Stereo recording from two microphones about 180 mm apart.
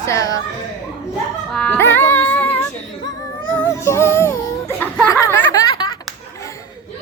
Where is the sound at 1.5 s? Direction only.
5° left (ahead or behind).